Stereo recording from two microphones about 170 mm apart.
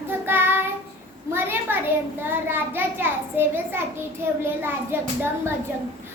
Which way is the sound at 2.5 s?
15° right (ahead or behind).